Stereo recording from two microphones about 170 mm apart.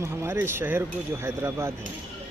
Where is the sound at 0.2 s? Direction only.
15° right (ahead or behind).